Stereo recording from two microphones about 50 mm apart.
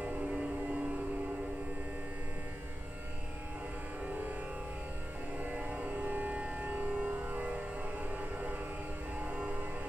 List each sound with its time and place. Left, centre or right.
0.0 s music: right
5.4 s music: right
8.2 s train: right
9.2 s music: right